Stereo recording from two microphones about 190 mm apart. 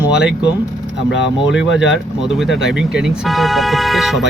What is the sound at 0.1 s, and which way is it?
Speech, 5° right (ahead or behind).